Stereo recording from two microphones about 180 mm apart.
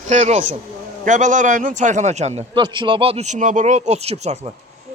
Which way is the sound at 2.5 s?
25° right (ahead or behind).